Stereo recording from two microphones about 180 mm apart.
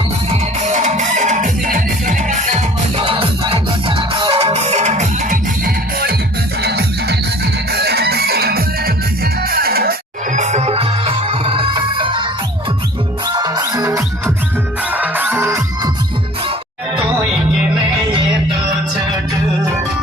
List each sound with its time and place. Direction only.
0.3 s music: 40° right (ahead or behind)
6.6 s music: 65° right (ahead or behind)
10.3 s music: 40° right (ahead or behind); by 15.9 s 15° right (ahead or behind)